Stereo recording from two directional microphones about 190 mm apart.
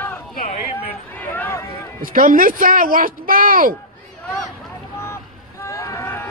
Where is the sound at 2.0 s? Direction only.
45° right (ahead or behind).